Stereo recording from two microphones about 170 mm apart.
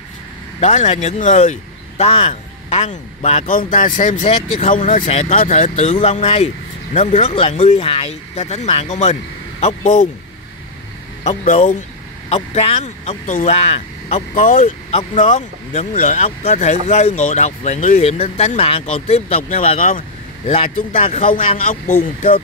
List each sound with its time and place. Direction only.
0.6 s speech: 40° left (ahead or behind)
3.4 s speech: 55° left (ahead or behind)
11.2 s speech: 40° left (ahead or behind)
15.0 s speech: 30° left (ahead or behind)
19.8 s vehicle: 50° left (ahead or behind)
21.0 s speech: 35° left (ahead or behind)
21.3 s speech: 50° left (ahead or behind)